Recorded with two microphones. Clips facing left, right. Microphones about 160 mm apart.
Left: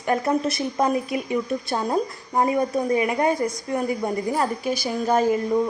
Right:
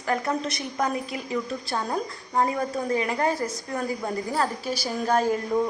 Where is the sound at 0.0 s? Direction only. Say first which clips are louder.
Left 5 dB; 25° left (ahead or behind).